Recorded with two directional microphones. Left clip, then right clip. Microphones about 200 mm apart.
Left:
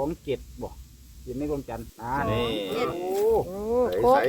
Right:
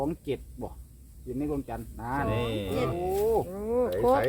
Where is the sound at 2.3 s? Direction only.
50° left (ahead or behind).